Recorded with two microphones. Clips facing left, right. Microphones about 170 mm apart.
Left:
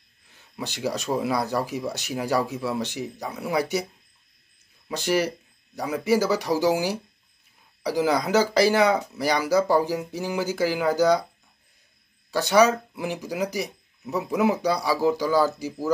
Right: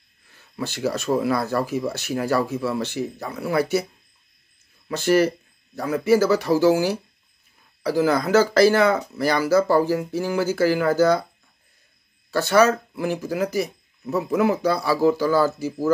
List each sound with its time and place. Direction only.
0.7 s speech: 15° left (ahead or behind)
3.3 s speech: centre (ahead or behind)
3.5 s speech: 15° left (ahead or behind)
4.8 s speech: 15° left (ahead or behind)
12.3 s speech: 15° left (ahead or behind)